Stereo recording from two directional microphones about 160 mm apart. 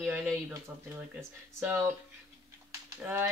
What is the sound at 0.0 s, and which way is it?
Speech, 15° right (ahead or behind).